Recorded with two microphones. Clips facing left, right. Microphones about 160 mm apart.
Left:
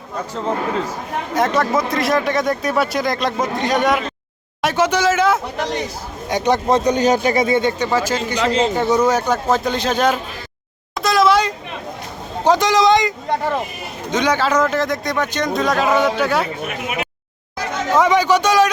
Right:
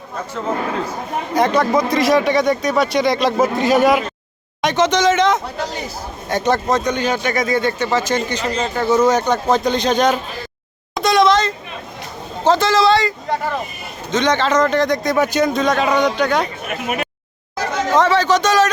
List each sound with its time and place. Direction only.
1.3 s speech: centre (ahead or behind)
4.6 s a man's voice: 5° left (ahead or behind)
6.7 s a man's voice: 30° left (ahead or behind); by 8.4 s 10° left (ahead or behind)
8.6 s a man's voice: 20° left (ahead or behind)
10.9 s a sound: centre (ahead or behind)
12.5 s a man's voice: 15° left (ahead or behind)
16.6 s speech: 45° right (ahead or behind)
17.9 s a man's voice: 10° left (ahead or behind)